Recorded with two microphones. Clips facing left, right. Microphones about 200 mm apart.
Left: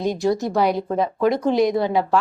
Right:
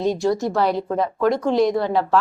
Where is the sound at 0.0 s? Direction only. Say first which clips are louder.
Right 1 dB; 15° left (ahead or behind).